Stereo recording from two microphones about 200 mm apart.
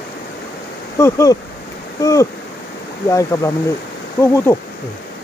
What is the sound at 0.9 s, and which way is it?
Speech, 15° left (ahead or behind).